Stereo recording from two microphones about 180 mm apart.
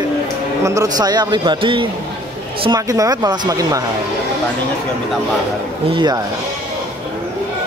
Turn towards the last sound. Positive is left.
turn(degrees=-25)  # may be behind; listen again after turning